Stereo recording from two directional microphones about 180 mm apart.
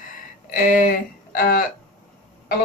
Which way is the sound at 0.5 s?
50° left (ahead or behind).